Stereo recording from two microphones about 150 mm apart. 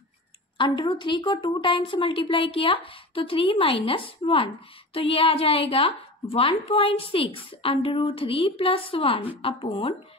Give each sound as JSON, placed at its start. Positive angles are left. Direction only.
{"t": 0.6, "sound": "a woman's voice", "side_deg": 30}